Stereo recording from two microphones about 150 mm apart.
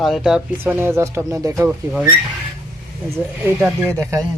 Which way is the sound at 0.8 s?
15° right (ahead or behind).